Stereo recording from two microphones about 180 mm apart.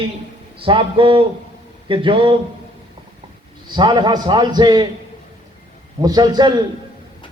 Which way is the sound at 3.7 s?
25° right (ahead or behind).